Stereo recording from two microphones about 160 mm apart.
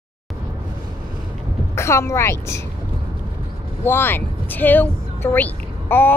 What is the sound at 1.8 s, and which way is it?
Speech, 15° left (ahead or behind).